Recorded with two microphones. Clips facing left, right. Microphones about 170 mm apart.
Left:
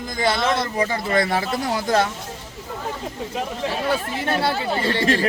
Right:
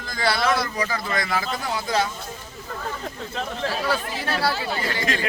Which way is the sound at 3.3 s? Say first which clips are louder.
Left 1 dB; 15° left (ahead or behind).